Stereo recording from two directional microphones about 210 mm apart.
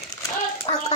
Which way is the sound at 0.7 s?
25° left (ahead or behind).